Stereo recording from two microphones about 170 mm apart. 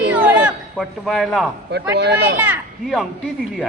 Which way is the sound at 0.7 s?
Centre (ahead or behind).